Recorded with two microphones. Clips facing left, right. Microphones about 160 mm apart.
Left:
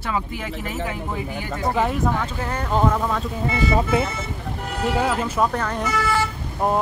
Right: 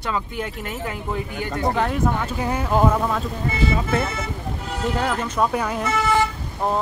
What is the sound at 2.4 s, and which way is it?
Speech, 10° right (ahead or behind).